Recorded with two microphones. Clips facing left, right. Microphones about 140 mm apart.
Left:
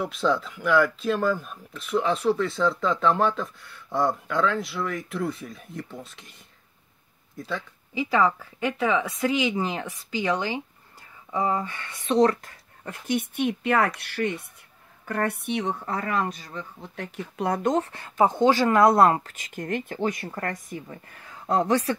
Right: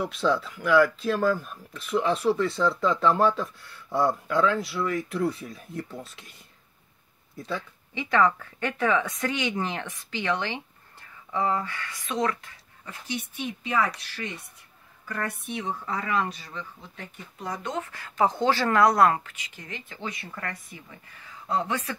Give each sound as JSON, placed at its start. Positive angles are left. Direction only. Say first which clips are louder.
{"t": 0.0, "sound": "speech", "louder": "left 1 dB", "side_deg": 0}
{"t": 7.3, "sound": "speech", "louder": "even", "side_deg": 0}
{"t": 15.8, "sound": "speech", "louder": "left 1 dB", "side_deg": 50}
{"t": 16.9, "sound": "speech", "louder": "left 8 dB", "side_deg": 80}
{"t": 17.6, "sound": "speech", "louder": "left 8 dB", "side_deg": 40}
{"t": 17.9, "sound": "speech", "louder": "left 3 dB", "side_deg": 25}
{"t": 19.2, "sound": "speech", "louder": "left 11 dB", "side_deg": 45}